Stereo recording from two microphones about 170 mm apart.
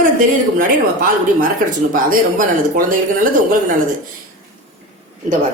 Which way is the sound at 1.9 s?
55° right (ahead or behind).